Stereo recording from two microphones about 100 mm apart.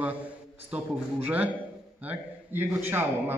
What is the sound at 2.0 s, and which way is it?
A man's voice, 20° right (ahead or behind).